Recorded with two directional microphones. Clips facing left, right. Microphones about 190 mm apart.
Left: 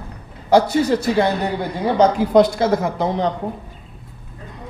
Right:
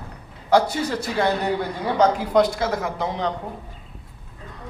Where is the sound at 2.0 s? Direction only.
25° left (ahead or behind).